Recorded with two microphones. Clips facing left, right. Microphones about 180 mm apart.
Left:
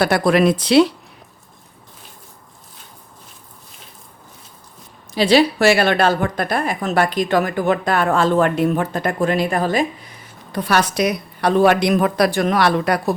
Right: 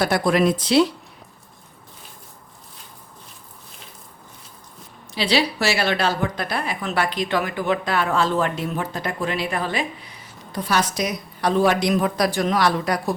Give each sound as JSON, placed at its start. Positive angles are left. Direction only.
{"t": 0.0, "sound": "speech", "side_deg": 70}
{"t": 5.1, "sound": "speech", "side_deg": 50}
{"t": 10.5, "sound": "a woman's voice", "side_deg": 65}